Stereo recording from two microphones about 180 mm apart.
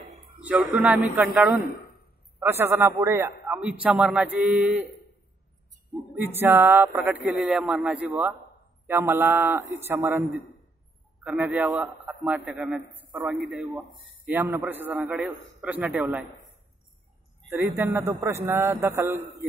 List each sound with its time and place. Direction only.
0.4 s speech: 5° right (ahead or behind)
1.6 s a sound: 60° left (ahead or behind)
2.4 s speech: 15° right (ahead or behind)
6.1 s a man's voice: 10° right (ahead or behind)
17.6 s speech: 15° right (ahead or behind)